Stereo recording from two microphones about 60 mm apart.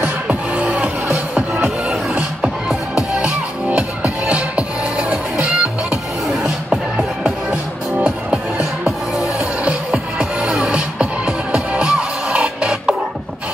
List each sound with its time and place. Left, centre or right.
0.0 s music: right